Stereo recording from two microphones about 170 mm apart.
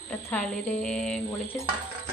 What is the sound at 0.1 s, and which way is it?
Speech, 5° left (ahead or behind).